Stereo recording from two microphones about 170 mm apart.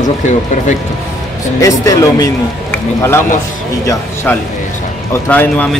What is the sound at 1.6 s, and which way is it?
Speech, 20° left (ahead or behind).